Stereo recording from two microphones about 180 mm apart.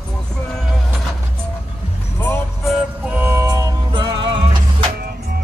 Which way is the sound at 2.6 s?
Centre (ahead or behind).